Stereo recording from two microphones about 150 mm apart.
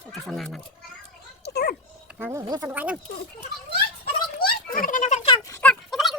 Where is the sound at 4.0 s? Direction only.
80° left; by 5.3 s 55° left (ahead or behind).